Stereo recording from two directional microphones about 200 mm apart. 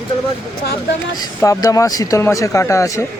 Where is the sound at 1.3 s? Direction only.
15° left (ahead or behind).